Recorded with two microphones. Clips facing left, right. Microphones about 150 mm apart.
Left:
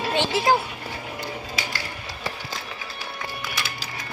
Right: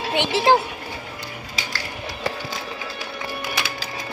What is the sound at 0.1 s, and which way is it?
Speech, 20° right (ahead or behind).